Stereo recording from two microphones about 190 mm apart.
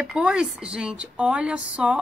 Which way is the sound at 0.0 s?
5° right (ahead or behind).